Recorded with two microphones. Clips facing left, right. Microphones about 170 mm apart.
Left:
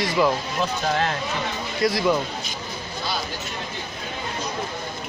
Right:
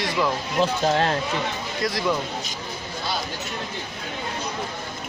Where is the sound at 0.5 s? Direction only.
30° right (ahead or behind).